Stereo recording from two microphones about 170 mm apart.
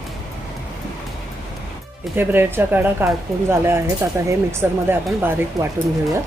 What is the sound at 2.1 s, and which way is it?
Speech, 10° right (ahead or behind).